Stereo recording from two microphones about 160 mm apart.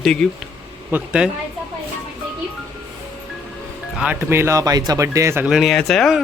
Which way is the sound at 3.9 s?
10° right (ahead or behind).